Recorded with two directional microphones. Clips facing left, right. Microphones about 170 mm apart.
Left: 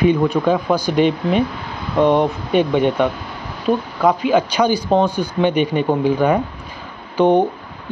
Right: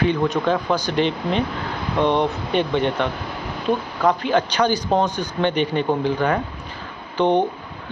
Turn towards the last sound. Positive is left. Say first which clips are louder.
# left 4 dB
turn(degrees=10)  # may be behind; listen again after turning